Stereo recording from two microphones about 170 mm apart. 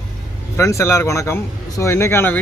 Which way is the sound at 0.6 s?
15° left (ahead or behind).